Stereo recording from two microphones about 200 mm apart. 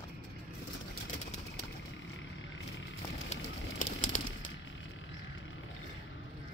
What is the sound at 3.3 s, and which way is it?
Bird, 35° left (ahead or behind).